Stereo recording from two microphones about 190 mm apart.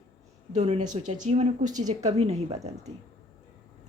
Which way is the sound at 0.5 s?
35° right (ahead or behind).